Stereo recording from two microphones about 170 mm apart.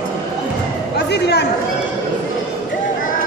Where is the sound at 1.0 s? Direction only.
75° left (ahead or behind).